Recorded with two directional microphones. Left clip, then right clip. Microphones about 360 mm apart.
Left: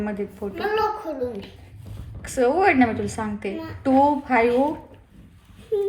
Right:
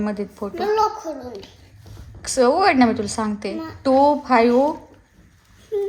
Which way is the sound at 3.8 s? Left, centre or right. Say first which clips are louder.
Right 3 dB; right.